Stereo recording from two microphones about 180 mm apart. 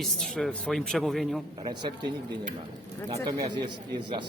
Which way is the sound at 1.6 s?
25° right (ahead or behind).